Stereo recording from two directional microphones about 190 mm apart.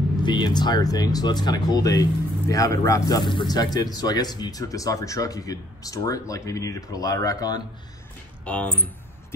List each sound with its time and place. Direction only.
0.2 s speech: 25° left (ahead or behind)
8.5 s speech: 5° left (ahead or behind)